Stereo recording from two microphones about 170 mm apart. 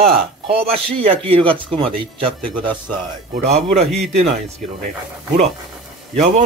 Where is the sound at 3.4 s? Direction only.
40° right (ahead or behind).